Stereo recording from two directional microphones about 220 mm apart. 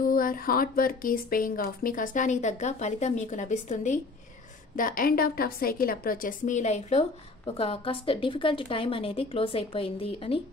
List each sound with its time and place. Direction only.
0.0 s a woman's voice: 40° left (ahead or behind); by 10.4 s 25° left (ahead or behind)